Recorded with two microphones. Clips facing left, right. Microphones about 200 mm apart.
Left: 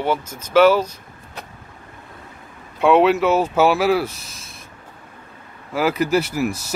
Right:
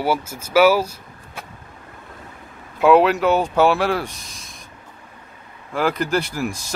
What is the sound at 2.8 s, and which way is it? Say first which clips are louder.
Speech: even; centre (ahead or behind).